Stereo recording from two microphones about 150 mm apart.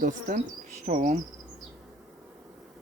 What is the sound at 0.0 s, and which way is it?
Speech, 60° right (ahead or behind).